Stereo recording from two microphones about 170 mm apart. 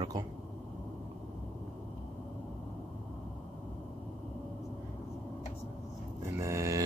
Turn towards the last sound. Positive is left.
turn(degrees=-15)  # may be behind; listen again after turning